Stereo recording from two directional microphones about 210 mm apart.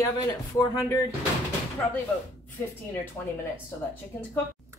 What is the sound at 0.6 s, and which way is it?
Speech, 15° left (ahead or behind).